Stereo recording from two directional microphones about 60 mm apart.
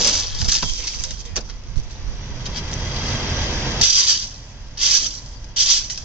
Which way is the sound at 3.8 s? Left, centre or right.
Right.